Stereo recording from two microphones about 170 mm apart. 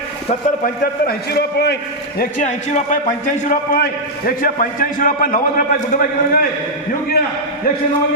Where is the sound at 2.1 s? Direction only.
50° left (ahead or behind).